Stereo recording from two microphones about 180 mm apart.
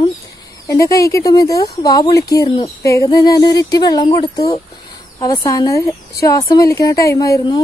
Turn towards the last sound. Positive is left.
turn(degrees=20)  # may be behind; listen again after turning